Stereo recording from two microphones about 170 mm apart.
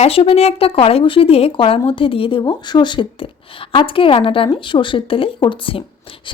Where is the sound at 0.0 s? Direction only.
35° left (ahead or behind).